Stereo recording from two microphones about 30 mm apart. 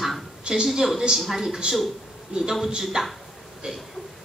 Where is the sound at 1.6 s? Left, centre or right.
Right.